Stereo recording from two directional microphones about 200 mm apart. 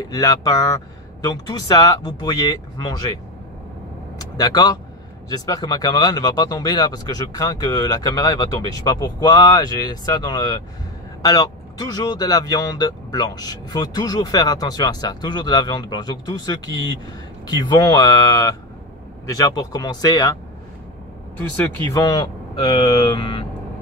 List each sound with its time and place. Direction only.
0.1 s speech: 20° left (ahead or behind)
4.4 s speech: 20° left (ahead or behind)
21.8 s speech: 15° left (ahead or behind)